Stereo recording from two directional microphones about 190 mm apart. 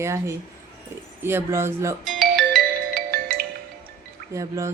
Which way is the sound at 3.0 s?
50° right (ahead or behind).